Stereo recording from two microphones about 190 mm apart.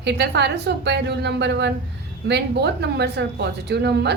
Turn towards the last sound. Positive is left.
turn(degrees=-60)  # may be behind; listen again after turning